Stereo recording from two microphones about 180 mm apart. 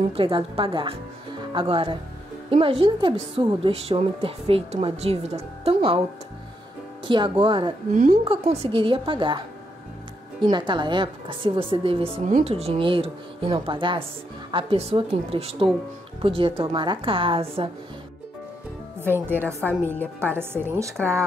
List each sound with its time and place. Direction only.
0.1 s a woman's voice: 30° right (ahead or behind)
7.1 s a woman's voice: 25° right (ahead or behind)
7.9 s a woman's voice: 50° right (ahead or behind)
8.2 s a woman's voice: 30° right (ahead or behind)
10.4 s a woman's voice: 25° right (ahead or behind)
19.0 s a woman's voice: 10° right (ahead or behind)